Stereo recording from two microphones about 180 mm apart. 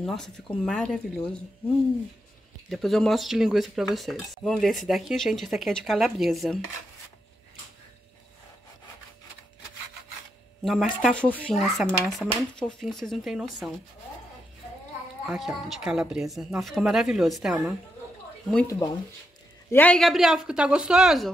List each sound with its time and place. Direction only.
0.0 s speech: centre (ahead or behind)
2.7 s speech: centre (ahead or behind)
10.6 s speech: centre (ahead or behind)
15.2 s speech: centre (ahead or behind)
18.7 s speech: 20° left (ahead or behind)
19.7 s speech: 10° left (ahead or behind)